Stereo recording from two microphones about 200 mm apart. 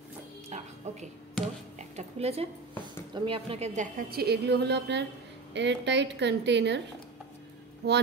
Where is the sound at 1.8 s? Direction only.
30° right (ahead or behind).